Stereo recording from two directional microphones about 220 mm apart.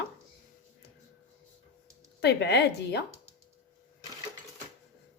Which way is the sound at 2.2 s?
50° left (ahead or behind).